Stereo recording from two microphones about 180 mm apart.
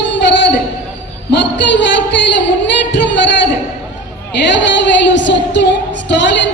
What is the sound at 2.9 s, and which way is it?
Speech, 80° left.